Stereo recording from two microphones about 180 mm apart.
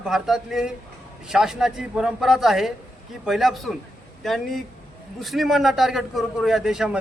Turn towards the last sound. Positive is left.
turn(degrees=-5)  # may be behind; listen again after turning